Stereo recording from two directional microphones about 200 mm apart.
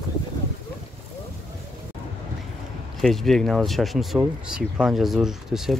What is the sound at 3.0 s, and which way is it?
Speech, centre (ahead or behind).